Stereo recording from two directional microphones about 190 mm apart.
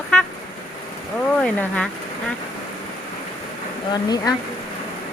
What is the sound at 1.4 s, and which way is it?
Speech, 5° left (ahead or behind).